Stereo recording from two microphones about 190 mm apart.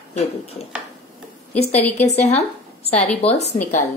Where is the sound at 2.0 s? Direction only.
35° left (ahead or behind).